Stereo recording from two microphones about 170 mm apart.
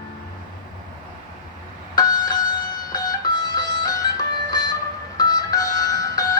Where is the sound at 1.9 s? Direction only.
25° left (ahead or behind).